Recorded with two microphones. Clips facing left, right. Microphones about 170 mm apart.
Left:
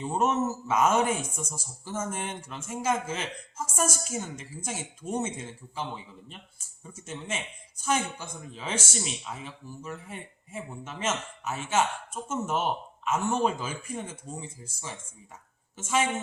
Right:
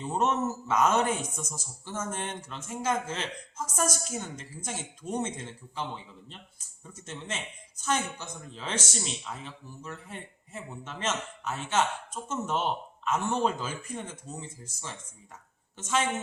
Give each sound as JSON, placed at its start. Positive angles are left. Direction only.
{"t": 0.0, "sound": "a man's voice", "side_deg": 10}
{"t": 6.8, "sound": "a man's voice", "side_deg": 10}